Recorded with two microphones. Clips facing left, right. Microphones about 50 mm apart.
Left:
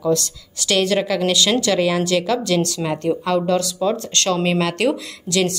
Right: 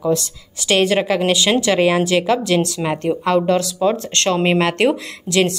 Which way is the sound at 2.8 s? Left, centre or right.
Right.